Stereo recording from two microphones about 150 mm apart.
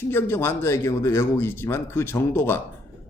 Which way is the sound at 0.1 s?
15° left (ahead or behind).